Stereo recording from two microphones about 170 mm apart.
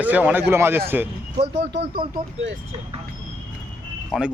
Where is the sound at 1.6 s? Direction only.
85° right.